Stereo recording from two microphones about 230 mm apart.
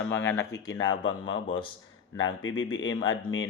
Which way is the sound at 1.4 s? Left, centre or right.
Left.